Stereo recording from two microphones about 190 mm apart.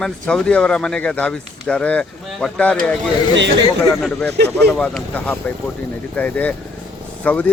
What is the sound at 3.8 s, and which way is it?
Speech, 5° left (ahead or behind).